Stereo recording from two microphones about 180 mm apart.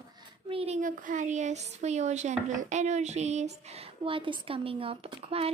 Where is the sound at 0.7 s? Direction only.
45° right (ahead or behind).